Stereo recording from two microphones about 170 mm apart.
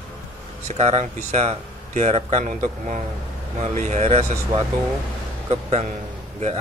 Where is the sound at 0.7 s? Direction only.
40° right (ahead or behind).